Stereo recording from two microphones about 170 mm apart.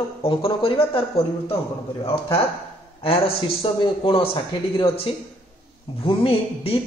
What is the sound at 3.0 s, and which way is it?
A man's voice, 35° left (ahead or behind).